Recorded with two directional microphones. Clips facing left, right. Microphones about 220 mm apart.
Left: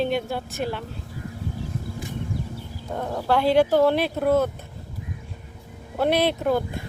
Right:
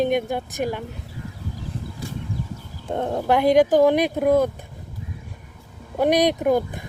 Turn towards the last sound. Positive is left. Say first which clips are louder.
# right 3 dB
turn(degrees=-15)  # may be behind; listen again after turning